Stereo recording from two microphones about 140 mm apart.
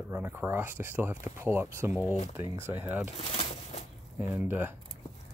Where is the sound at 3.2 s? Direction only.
45° left (ahead or behind).